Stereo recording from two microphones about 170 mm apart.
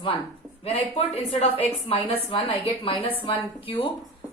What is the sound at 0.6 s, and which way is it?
A woman's voice, 35° left (ahead or behind).